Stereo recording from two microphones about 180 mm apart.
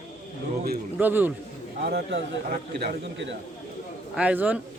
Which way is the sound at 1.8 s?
60° right (ahead or behind).